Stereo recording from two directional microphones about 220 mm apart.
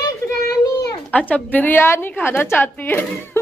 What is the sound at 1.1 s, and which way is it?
A woman's voice, 5° left (ahead or behind).